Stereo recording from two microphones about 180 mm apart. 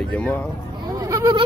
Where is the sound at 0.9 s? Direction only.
15° right (ahead or behind).